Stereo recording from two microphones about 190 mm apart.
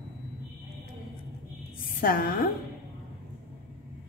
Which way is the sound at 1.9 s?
45° left (ahead or behind).